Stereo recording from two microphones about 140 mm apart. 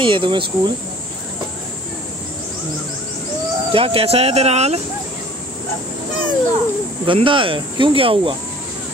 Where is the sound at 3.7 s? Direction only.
45° right (ahead or behind).